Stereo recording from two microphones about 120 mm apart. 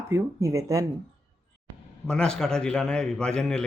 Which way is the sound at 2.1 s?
5° left (ahead or behind).